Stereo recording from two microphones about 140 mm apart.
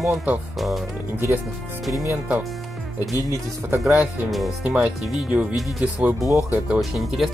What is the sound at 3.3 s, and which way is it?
Speech, 20° right (ahead or behind).